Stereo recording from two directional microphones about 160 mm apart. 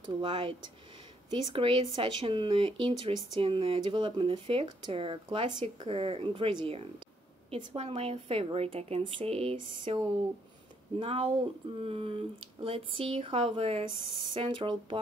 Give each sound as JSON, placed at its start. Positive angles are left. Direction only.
{"t": 0.2, "sound": "speech", "side_deg": -30}